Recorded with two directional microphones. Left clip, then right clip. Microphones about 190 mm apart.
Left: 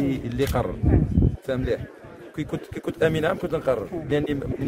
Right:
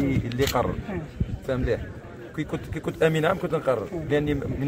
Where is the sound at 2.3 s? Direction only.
45° left (ahead or behind).